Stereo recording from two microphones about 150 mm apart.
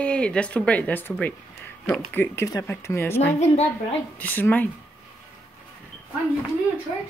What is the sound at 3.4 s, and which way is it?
Speech, 45° left (ahead or behind).